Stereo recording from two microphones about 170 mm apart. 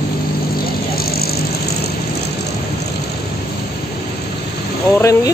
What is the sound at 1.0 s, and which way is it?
Vehicle, 65° left (ahead or behind).